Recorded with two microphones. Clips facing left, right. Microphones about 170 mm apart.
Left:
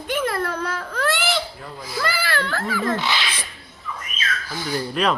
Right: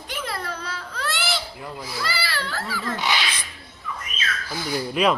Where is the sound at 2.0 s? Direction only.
55° left (ahead or behind).